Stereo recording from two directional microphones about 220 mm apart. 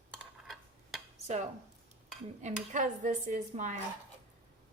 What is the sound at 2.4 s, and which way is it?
Dishes, 35° right (ahead or behind).